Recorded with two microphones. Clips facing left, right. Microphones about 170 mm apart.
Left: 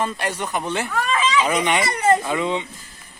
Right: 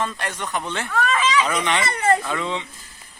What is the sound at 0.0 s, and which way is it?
Speech, 10° left (ahead or behind).